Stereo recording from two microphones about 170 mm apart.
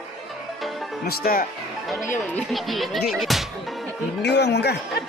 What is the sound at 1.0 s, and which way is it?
Speech, 60° left (ahead or behind).